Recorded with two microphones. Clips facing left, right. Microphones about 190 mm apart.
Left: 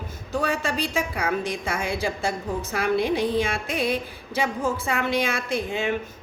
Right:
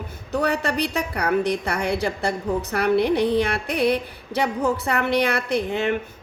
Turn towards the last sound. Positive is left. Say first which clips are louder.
# right 3 dB
turn(degrees=-65)  # may be behind; listen again after turning